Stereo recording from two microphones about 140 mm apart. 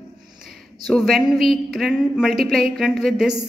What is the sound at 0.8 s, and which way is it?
A woman's voice, centre (ahead or behind).